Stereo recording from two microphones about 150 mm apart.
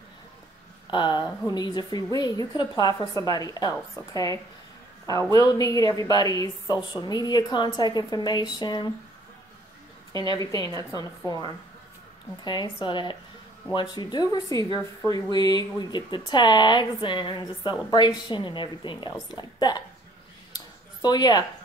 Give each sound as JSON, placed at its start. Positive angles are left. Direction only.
{"t": 0.8, "sound": "a woman's voice", "side_deg": 30}
{"t": 10.3, "sound": "a woman's voice", "side_deg": 25}
{"t": 12.4, "sound": "a woman's voice", "side_deg": 30}
{"t": 21.0, "sound": "a woman's voice", "side_deg": 25}